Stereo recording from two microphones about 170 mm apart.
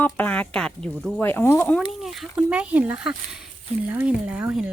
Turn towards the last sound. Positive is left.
turn(degrees=-10)  # may be behind; listen again after turning